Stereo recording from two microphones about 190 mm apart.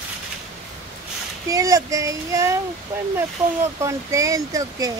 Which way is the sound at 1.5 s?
15° right (ahead or behind).